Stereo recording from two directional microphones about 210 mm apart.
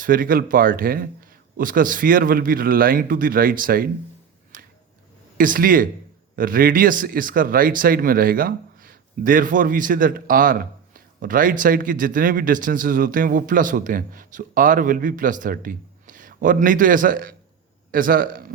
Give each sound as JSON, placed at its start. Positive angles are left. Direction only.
{"t": 0.0, "sound": "speech", "side_deg": -40}
{"t": 4.5, "sound": "a sound", "side_deg": -40}
{"t": 5.4, "sound": "speech", "side_deg": -40}